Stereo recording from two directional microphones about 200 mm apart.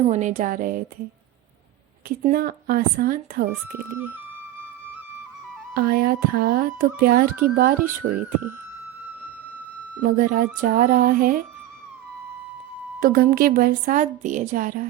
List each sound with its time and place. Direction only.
0.0 s speech: 35° right (ahead or behind)
2.0 s a woman's voice: 45° right (ahead or behind)
3.7 s speech: 10° right (ahead or behind)
5.7 s a woman's voice: 50° right (ahead or behind)
10.0 s a woman's voice: 45° right (ahead or behind)
13.0 s a woman's voice: 45° right (ahead or behind)